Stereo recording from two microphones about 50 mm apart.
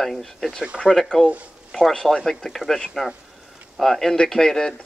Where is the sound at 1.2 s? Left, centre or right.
Right.